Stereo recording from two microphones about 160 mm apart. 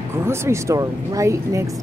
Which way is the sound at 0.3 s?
20° right (ahead or behind).